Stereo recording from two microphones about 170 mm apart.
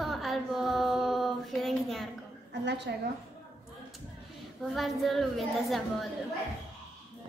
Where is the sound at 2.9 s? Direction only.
80° right.